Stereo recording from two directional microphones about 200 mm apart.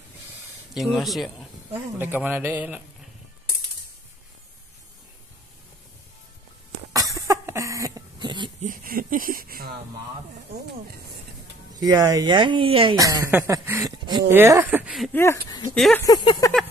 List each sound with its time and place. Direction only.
0.7 s a man's voice: centre (ahead or behind)
6.9 s cough: 15° right (ahead or behind)
8.5 s speech: 40° right (ahead or behind)
11.7 s speech: 15° right (ahead or behind)
12.9 s a man's voice: 15° right (ahead or behind)
13.3 s a sound: 10° right (ahead or behind)
14.3 s a man's voice: 10° right (ahead or behind)
15.7 s a sound: 5° left (ahead or behind)
16.1 s a sound: 20° left (ahead or behind)